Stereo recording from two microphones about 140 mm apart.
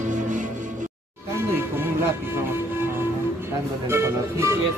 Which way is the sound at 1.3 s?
15° right (ahead or behind).